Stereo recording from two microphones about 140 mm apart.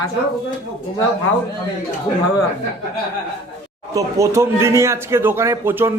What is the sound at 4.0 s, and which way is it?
A man's voice, 20° right (ahead or behind).